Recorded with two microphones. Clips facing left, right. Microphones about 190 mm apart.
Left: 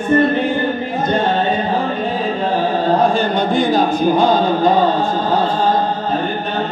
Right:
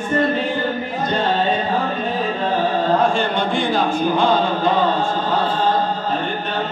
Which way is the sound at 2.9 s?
40° left (ahead or behind).